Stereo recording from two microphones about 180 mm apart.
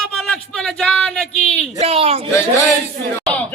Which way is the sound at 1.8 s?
35° right (ahead or behind).